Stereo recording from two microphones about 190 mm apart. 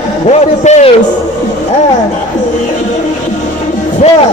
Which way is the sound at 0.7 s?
35° left (ahead or behind).